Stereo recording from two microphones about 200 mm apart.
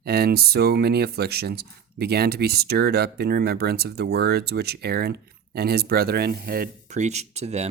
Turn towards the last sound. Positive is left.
turn(degrees=-35)  # may be behind; listen again after turning